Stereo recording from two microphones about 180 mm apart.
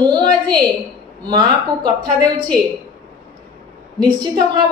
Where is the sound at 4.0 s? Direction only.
25° right (ahead or behind).